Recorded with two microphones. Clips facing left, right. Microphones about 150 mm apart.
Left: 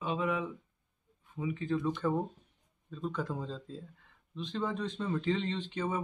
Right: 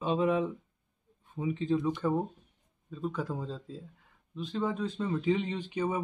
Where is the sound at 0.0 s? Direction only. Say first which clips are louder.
Right 5 dB; 30° right (ahead or behind).